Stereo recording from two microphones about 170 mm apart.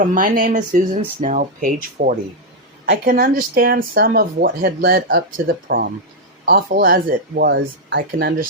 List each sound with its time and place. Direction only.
0.0 s speech: 50° right (ahead or behind)
2.8 s a woman's voice: 90° right
3.1 s speech: 60° right (ahead or behind); by 8.4 s 80° right